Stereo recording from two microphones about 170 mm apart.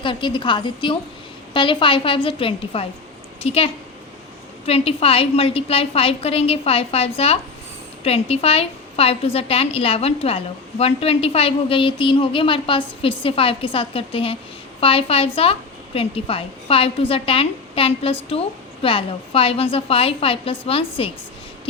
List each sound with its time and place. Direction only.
0.0 s a woman's voice: 30° left (ahead or behind)